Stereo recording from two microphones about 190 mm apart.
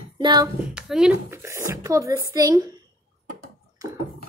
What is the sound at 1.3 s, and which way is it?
Speech, 15° right (ahead or behind).